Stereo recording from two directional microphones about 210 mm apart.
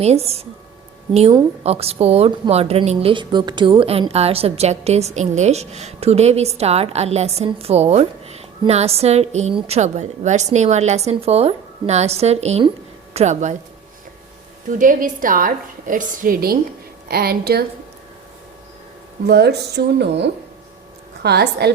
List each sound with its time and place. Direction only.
0.0 s a woman's voice: 30° right (ahead or behind)
1.6 s a woman's voice: 30° right (ahead or behind)
14.7 s a woman's voice: 40° right (ahead or behind)
19.3 s speech: 50° right (ahead or behind)